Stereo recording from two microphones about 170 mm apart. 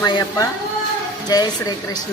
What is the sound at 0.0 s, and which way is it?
A woman's voice, 25° left (ahead or behind).